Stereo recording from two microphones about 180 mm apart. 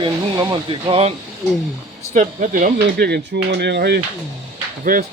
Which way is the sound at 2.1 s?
40° right (ahead or behind).